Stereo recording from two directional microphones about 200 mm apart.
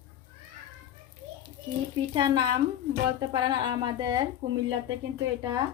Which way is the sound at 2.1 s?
20° right (ahead or behind).